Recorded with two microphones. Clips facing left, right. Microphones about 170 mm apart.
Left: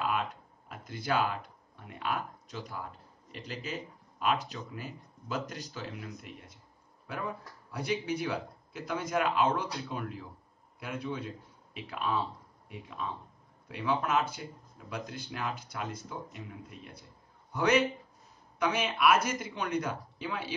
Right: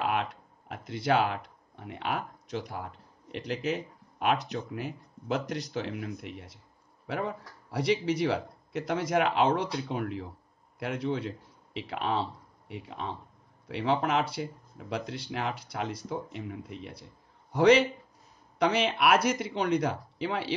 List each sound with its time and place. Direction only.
0.0 s speech: 65° right (ahead or behind)
6.2 s a man's voice: 80° right